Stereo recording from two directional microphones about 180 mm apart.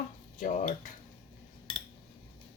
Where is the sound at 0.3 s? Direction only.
45° left (ahead or behind).